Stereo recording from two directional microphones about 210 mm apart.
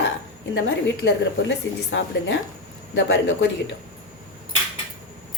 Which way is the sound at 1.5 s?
60° left (ahead or behind).